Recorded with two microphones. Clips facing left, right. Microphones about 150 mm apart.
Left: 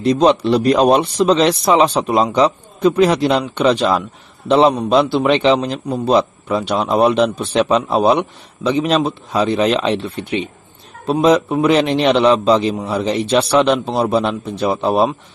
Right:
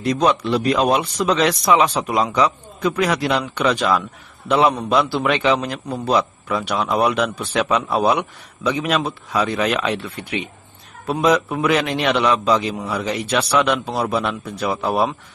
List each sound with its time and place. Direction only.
0.0 s a man's voice: 25° left (ahead or behind)